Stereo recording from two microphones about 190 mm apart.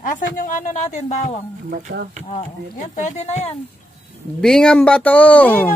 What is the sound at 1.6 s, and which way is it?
Speech, 45° right (ahead or behind).